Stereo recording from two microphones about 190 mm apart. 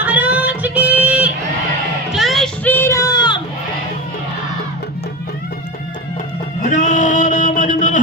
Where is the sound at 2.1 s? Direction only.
Centre (ahead or behind); by 3.4 s 25° left (ahead or behind).